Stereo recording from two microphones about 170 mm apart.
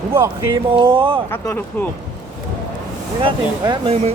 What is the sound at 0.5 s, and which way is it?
Speech, 30° right (ahead or behind).